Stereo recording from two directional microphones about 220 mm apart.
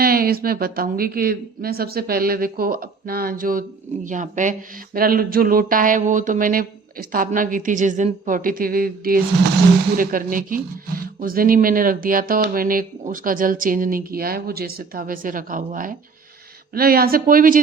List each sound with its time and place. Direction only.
0.0 s a woman's voice: 40° right (ahead or behind)